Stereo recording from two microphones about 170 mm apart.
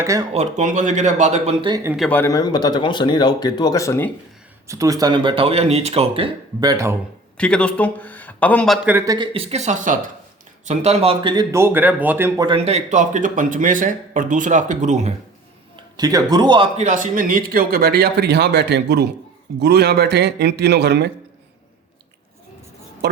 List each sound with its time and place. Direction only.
0.0 s speech: 20° right (ahead or behind)
0.3 s a man's voice: 45° right (ahead or behind)
2.0 s speech: 10° left (ahead or behind)
4.6 s speech: 20° right (ahead or behind)
6.7 s speech: 15° right (ahead or behind)
7.3 s a man's voice: 5° left (ahead or behind)
9.0 s speech: 25° right (ahead or behind); by 10.0 s 45° right (ahead or behind)
10.7 s speech: 35° right (ahead or behind)
11.5 s speech: 15° right (ahead or behind)
12.4 s a man's voice: 30° right (ahead or behind)
15.7 s a man's voice: 20° right (ahead or behind)
16.7 s speech: 45° right (ahead or behind); by 21.1 s 80° right